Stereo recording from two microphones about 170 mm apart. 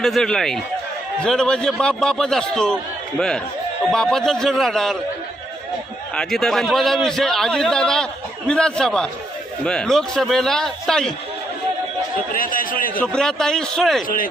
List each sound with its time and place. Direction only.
0.0 s a man's voice: centre (ahead or behind)
6.1 s a man's voice: centre (ahead or behind)
12.3 s speech: 55° left (ahead or behind)
13.0 s a man's voice: 5° left (ahead or behind)